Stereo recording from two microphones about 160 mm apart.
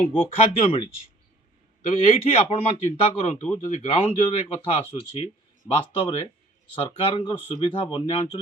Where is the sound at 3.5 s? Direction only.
45° left (ahead or behind).